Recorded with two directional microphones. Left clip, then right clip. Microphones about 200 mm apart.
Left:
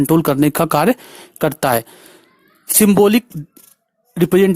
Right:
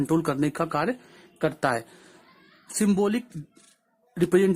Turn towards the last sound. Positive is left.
turn(degrees=40)  # may be behind; listen again after turning